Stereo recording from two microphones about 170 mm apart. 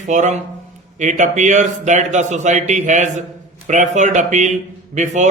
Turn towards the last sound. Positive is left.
turn(degrees=-45)  # may be behind; listen again after turning